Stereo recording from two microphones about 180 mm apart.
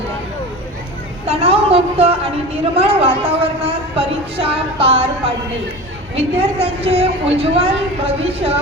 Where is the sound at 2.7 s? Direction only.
30° right (ahead or behind).